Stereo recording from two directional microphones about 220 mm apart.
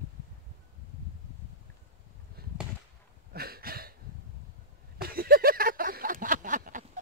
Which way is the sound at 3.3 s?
45° right (ahead or behind).